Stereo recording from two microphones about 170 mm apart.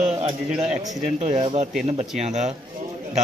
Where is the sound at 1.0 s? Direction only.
40° right (ahead or behind).